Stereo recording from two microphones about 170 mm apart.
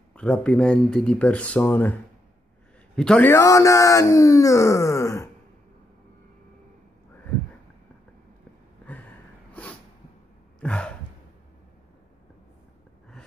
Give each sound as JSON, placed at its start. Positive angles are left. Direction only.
{"t": 0.1, "sound": "speech", "side_deg": 5}
{"t": 3.0, "sound": "speech", "side_deg": 5}
{"t": 9.5, "sound": "snort", "side_deg": 10}
{"t": 10.6, "sound": "sigh", "side_deg": 5}